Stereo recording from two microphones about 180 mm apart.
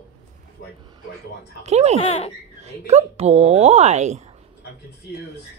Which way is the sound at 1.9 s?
35° left (ahead or behind).